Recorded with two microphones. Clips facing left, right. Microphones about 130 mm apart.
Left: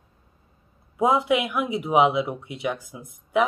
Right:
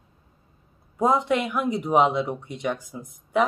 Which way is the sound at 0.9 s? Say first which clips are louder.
Left 1 dB; 5° left (ahead or behind).